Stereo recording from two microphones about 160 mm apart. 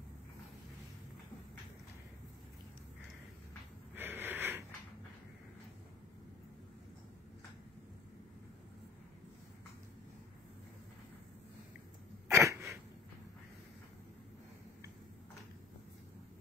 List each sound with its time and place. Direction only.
3.9 s wheeze: 15° right (ahead or behind)
12.3 s cough: 20° right (ahead or behind)